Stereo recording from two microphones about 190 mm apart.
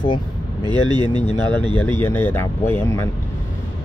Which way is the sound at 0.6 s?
25° right (ahead or behind).